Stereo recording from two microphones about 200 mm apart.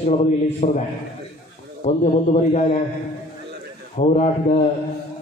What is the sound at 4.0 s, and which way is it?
Speech, 35° left (ahead or behind).